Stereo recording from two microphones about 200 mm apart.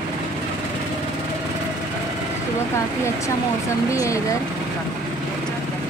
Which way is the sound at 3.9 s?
15° left (ahead or behind).